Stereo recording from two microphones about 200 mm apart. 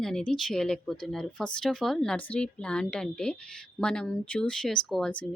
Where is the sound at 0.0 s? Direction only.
5° left (ahead or behind).